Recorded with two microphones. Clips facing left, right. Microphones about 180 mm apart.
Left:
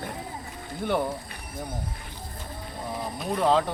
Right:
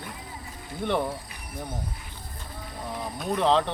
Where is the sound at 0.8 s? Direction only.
5° left (ahead or behind).